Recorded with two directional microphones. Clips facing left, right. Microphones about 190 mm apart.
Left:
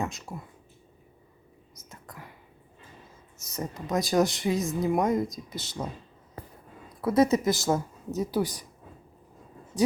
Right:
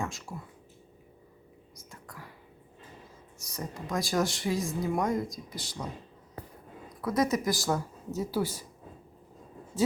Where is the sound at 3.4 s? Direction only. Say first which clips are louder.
Left 4 dB; 20° left (ahead or behind).